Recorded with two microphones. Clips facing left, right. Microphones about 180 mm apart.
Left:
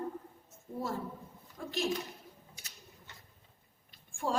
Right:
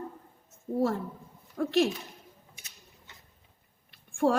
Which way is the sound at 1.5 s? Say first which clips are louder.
Right 10 dB; 70° right (ahead or behind).